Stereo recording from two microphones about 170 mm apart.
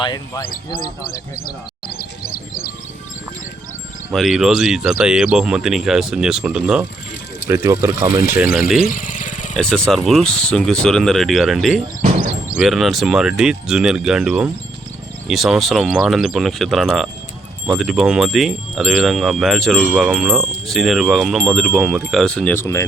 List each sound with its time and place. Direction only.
0.0 s speech: 25° left (ahead or behind)
0.8 s speech: 60° left (ahead or behind)
4.1 s wind chime: centre (ahead or behind)
7.4 s speech: 15° right (ahead or behind)
8.5 s wind chime: centre (ahead or behind)
8.9 s vehicle: 50° left (ahead or behind)
9.6 s wind chime: 5° left (ahead or behind)